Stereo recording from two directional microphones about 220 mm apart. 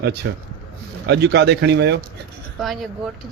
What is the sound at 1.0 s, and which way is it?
Speech, 50° right (ahead or behind).